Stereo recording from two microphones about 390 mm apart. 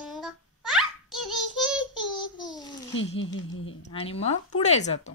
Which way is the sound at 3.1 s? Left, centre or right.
Left.